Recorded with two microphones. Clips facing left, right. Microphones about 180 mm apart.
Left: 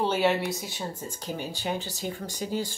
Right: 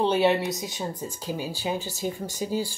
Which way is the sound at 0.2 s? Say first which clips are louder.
Right 3 dB; 20° right (ahead or behind).